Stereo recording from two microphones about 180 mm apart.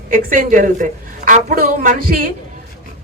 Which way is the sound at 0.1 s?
45° right (ahead or behind).